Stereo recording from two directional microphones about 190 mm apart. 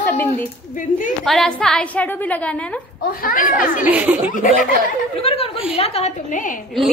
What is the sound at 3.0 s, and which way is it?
Speech, 50° left (ahead or behind).